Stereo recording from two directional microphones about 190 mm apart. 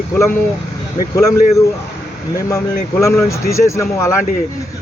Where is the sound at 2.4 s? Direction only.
15° left (ahead or behind).